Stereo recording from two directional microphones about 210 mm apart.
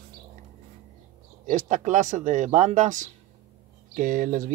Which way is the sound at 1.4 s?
35° right (ahead or behind).